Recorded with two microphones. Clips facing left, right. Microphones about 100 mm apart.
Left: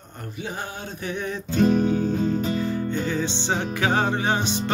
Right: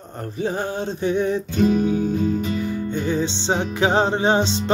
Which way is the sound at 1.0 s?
20° right (ahead or behind).